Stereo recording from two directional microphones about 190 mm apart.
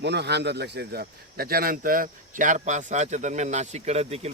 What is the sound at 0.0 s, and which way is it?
Speech, 65° right (ahead or behind).